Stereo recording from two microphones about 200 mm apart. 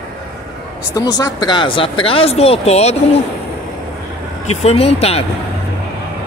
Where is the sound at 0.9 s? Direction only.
20° left (ahead or behind).